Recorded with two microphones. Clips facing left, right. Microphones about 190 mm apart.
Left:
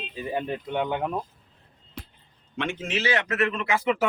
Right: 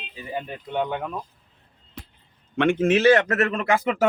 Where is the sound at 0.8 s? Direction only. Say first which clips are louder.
Left 1 dB; 20° left (ahead or behind).